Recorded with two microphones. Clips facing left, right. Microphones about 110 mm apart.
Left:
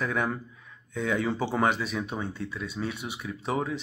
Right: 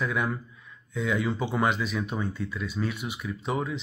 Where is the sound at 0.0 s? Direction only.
45° left (ahead or behind).